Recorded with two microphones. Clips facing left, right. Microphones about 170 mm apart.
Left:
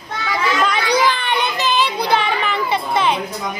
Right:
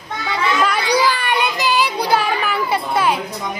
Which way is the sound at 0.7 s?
10° right (ahead or behind).